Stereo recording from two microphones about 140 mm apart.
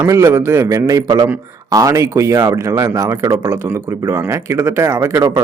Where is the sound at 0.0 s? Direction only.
20° right (ahead or behind).